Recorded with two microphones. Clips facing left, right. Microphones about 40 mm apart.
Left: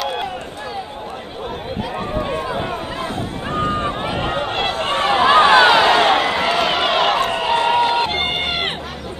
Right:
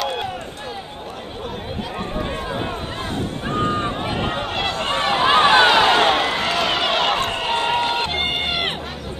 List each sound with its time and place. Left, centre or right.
4.5 s run: centre
4.9 s a sound: left
5.3 s run: centre
8.1 s run: centre